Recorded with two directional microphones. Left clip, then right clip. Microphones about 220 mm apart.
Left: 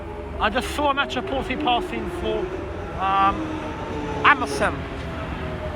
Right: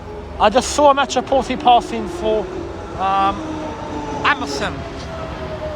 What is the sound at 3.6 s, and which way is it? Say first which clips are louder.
Vehicle: right 3 dB; 40° right (ahead or behind).